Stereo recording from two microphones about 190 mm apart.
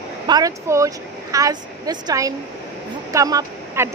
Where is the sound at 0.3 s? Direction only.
15° right (ahead or behind).